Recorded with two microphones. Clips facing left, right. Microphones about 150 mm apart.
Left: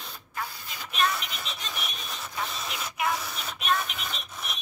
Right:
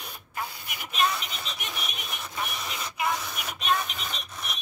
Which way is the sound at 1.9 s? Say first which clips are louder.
Right 1 dB; 20° right (ahead or behind).